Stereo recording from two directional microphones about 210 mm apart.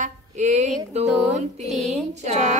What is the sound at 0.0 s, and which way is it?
Speech, 35° right (ahead or behind).